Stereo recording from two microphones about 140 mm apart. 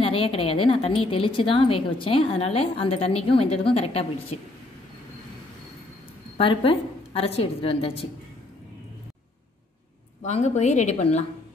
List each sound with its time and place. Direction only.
0.0 s a woman's voice: 40° left (ahead or behind)
6.3 s a woman's voice: 40° left (ahead or behind)
10.2 s a woman's voice: 55° left (ahead or behind)